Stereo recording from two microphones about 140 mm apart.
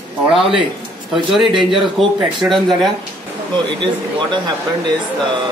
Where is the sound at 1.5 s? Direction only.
35° right (ahead or behind).